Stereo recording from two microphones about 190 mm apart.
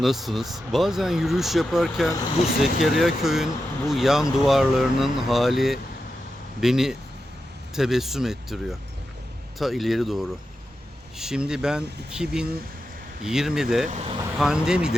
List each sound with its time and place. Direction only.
0.0 s speech: centre (ahead or behind)
13.9 s speech: 35° right (ahead or behind)
14.3 s speech: 5° right (ahead or behind)